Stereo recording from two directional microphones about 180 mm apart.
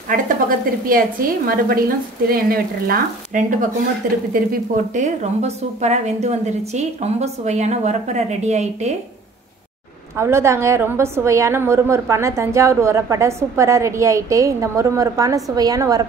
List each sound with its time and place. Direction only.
0.1 s a woman's voice: 50° right (ahead or behind)
10.1 s a woman's voice: 15° right (ahead or behind)